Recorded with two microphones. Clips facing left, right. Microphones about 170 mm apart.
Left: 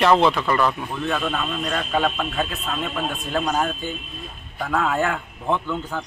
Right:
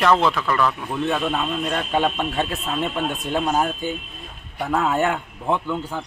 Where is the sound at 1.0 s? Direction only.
20° right (ahead or behind).